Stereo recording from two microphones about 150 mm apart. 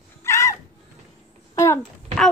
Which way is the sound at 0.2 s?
20° left (ahead or behind).